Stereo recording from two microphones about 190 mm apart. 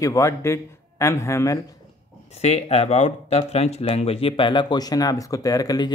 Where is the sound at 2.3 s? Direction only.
35° left (ahead or behind).